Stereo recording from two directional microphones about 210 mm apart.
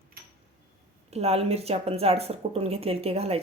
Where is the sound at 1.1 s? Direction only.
30° right (ahead or behind).